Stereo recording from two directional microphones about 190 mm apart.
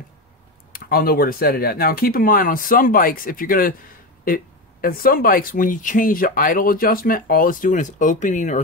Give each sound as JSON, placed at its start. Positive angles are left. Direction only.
{"t": 0.7, "sound": "speech", "side_deg": 50}
{"t": 4.8, "sound": "speech", "side_deg": 50}